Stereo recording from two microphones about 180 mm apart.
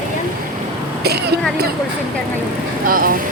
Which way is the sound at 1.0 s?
65° right (ahead or behind).